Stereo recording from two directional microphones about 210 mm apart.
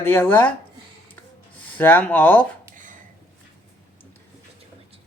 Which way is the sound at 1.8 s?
10° left (ahead or behind).